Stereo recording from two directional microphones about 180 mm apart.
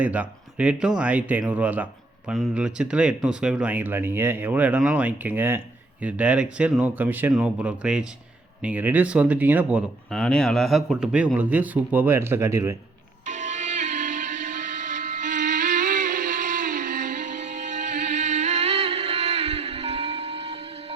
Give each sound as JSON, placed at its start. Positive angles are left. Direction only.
{"t": 0.0, "sound": "speech", "side_deg": -10}
{"t": 13.2, "sound": "music", "side_deg": -45}
{"t": 15.4, "sound": "a sound", "side_deg": -45}
{"t": 18.2, "sound": "music", "side_deg": -40}